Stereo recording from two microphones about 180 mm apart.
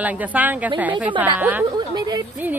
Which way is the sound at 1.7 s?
20° right (ahead or behind).